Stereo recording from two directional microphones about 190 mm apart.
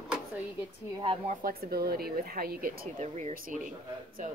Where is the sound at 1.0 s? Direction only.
30° right (ahead or behind).